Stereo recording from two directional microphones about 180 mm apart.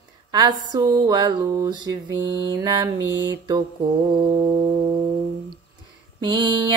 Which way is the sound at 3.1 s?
80° right.